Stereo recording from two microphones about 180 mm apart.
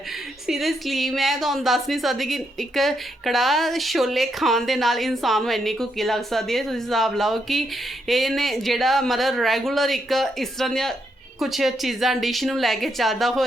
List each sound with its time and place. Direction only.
0.4 s a woman's voice: centre (ahead or behind)